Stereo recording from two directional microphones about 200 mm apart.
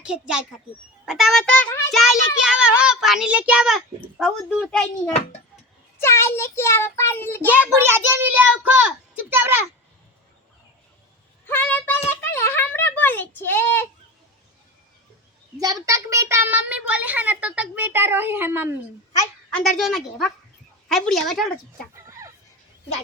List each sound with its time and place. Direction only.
0.0 s a child's voice: 5° right (ahead or behind)
2.4 s a child's voice: 5° right (ahead or behind); by 7.4 s 10° left (ahead or behind)
7.8 s a child's voice: 10° right (ahead or behind)
11.4 s a sound: 10° left (ahead or behind)
15.5 s a child's voice: 15° right (ahead or behind)
19.7 s a child's voice: centre (ahead or behind)
21.9 s a sound: 15° right (ahead or behind)